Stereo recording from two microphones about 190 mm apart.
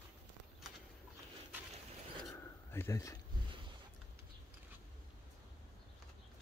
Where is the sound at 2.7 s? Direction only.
15° left (ahead or behind).